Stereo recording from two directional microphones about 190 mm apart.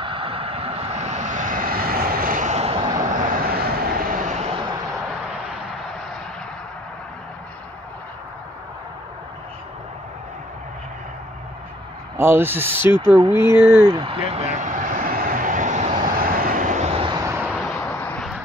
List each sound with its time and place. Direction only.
0.0 s vehicle: 30° right (ahead or behind)
3.2 s vehicle: 50° right (ahead or behind)
4.6 s vehicle: 20° right (ahead or behind)
12.2 s speech: 10° right (ahead or behind)
14.0 s vehicle: 30° right (ahead or behind); by 18.4 s 5° left (ahead or behind)